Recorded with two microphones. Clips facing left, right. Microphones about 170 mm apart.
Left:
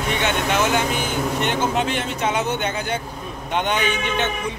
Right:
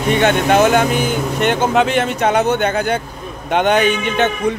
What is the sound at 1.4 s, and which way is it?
A man's voice, 75° right (ahead or behind).